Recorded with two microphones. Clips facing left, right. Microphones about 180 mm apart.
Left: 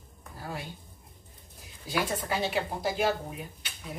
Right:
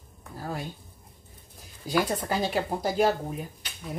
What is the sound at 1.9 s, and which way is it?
Speech, 35° right (ahead or behind).